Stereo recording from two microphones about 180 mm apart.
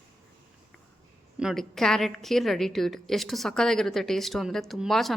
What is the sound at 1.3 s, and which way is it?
A woman's voice, centre (ahead or behind).